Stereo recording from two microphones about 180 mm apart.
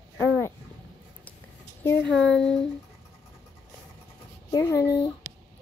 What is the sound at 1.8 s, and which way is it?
Speech, 10° left (ahead or behind).